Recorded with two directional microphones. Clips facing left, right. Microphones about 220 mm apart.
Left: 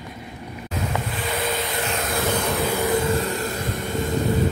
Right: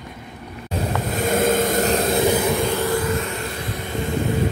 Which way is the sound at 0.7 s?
45° right (ahead or behind).